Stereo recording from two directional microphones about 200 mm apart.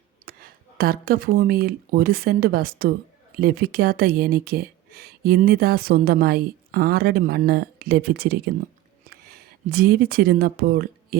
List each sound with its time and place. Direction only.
0.3 s speech: 50° right (ahead or behind)